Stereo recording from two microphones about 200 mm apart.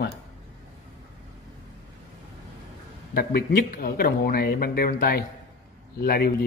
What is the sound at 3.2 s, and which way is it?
Speech, 50° left (ahead or behind).